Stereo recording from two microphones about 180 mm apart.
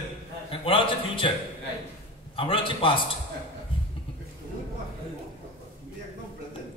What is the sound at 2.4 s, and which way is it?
Speech, 30° left (ahead or behind).